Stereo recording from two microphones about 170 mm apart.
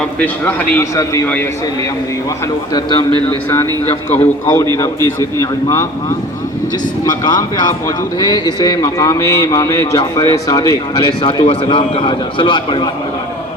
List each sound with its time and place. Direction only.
0.2 s a man's voice: 10° left (ahead or behind)
2.7 s a man's voice: 25° left (ahead or behind)
7.0 s a man's voice: 25° left (ahead or behind)
11.2 s a man's voice: 30° left (ahead or behind)